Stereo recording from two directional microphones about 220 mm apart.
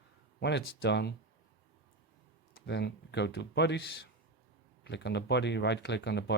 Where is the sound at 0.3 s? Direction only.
50° left (ahead or behind).